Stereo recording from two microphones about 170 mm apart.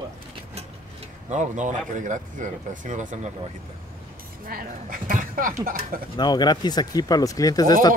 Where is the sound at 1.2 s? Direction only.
45° right (ahead or behind).